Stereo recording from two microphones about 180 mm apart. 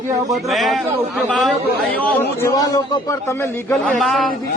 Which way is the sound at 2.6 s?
20° left (ahead or behind).